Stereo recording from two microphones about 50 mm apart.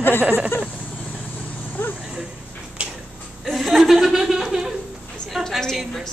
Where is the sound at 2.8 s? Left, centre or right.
Right.